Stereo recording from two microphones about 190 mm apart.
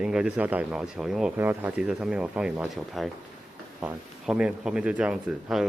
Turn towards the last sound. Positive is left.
turn(degrees=-5)  # may be behind; listen again after turning